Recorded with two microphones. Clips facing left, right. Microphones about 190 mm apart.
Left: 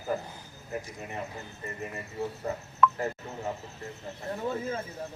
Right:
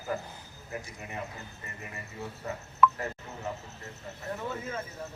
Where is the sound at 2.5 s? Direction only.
35° left (ahead or behind).